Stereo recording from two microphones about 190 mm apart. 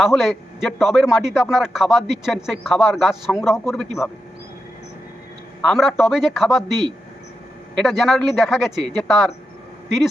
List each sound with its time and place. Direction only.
0.0 s a man's voice: centre (ahead or behind)
5.6 s a man's voice: centre (ahead or behind)
7.8 s a man's voice: centre (ahead or behind)